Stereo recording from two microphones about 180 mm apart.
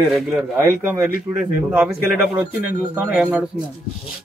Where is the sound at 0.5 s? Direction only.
15° right (ahead or behind).